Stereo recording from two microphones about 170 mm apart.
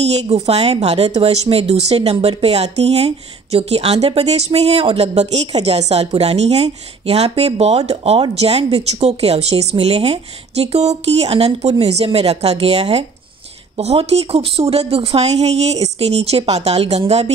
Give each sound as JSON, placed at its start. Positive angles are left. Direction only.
{"t": 0.0, "sound": "speech", "side_deg": -40}